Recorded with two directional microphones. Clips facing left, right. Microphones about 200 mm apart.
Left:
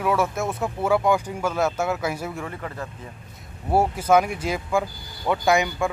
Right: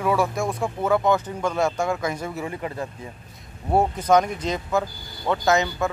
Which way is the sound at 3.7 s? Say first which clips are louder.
Even; 5° left (ahead or behind).